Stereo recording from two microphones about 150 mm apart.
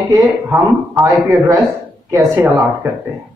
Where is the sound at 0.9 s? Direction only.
20° right (ahead or behind).